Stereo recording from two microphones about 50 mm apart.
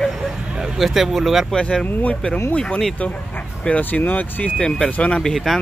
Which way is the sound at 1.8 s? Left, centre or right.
Left.